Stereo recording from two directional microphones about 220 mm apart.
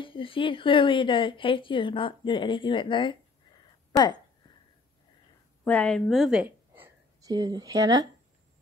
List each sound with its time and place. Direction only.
0.0 s a woman's voice: 25° left (ahead or behind)
5.6 s a woman's voice: 5° left (ahead or behind); by 8.1 s 15° right (ahead or behind)